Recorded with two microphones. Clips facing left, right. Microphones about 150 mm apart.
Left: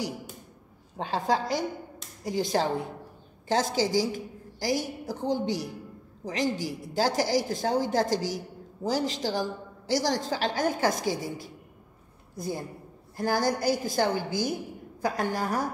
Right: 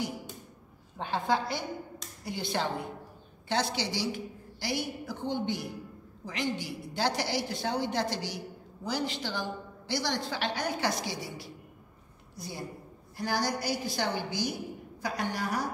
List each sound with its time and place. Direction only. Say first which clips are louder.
0.9 s a woman's voice: left 2 dB; 35° left (ahead or behind)
12.4 s a woman's voice: left 6 dB; 45° left (ahead or behind)